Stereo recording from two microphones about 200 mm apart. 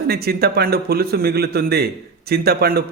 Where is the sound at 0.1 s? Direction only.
50° right (ahead or behind).